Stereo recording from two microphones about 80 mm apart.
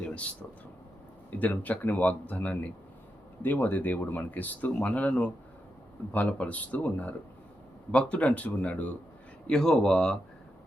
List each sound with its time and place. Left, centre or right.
0.0 s a sound: centre
1.4 s speech: centre
9.5 s speech: centre